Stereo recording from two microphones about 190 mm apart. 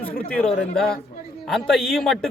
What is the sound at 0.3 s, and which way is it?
Speech, 5° left (ahead or behind).